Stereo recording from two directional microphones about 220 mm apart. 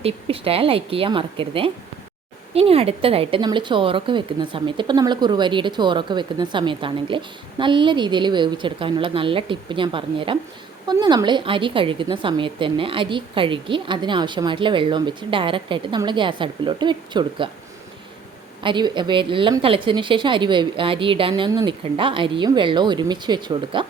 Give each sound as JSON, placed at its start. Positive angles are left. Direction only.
{"t": 0.0, "sound": "a woman's voice", "side_deg": -25}
{"t": 18.6, "sound": "a woman's voice", "side_deg": -20}